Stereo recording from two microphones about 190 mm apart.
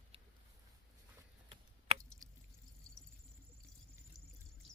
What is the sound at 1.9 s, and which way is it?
Squish, 35° right (ahead or behind).